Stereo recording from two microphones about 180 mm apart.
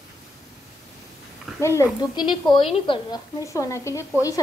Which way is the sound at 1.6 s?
15° left (ahead or behind).